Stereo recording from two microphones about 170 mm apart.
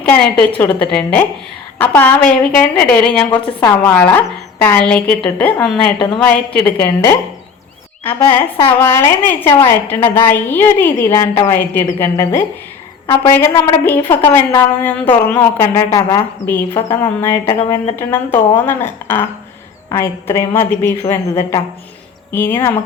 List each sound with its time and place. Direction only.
0.0 s a woman's voice: 5° left (ahead or behind)
3.4 s a woman's voice: 25° left (ahead or behind)
3.9 s a woman's voice: 10° left (ahead or behind)
8.3 s a woman's voice: 30° left (ahead or behind)
8.8 s a woman's voice: 15° left (ahead or behind)